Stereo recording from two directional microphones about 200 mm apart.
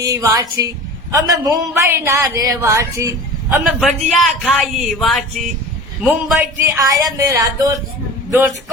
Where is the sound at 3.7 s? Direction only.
Centre (ahead or behind).